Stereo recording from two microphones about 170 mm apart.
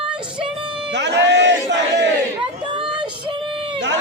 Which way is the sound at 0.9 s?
90° right.